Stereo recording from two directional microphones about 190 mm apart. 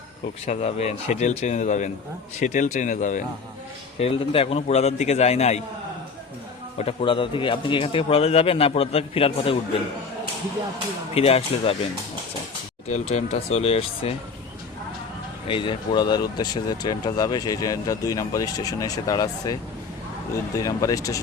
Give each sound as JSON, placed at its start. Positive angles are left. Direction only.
{"t": 0.4, "sound": "a man's voice", "side_deg": 35}
{"t": 3.9, "sound": "a man's voice", "side_deg": 30}
{"t": 6.7, "sound": "speech", "side_deg": 30}
{"t": 11.1, "sound": "a man's voice", "side_deg": 30}
{"t": 12.9, "sound": "a man's voice", "side_deg": 35}
{"t": 15.4, "sound": "speech", "side_deg": 25}
{"t": 20.6, "sound": "speech", "side_deg": 15}